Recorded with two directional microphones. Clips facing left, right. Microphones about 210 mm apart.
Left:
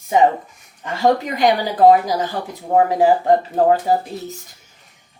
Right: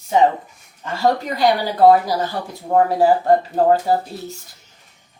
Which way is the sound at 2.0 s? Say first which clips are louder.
Left 1 dB; 15° left (ahead or behind).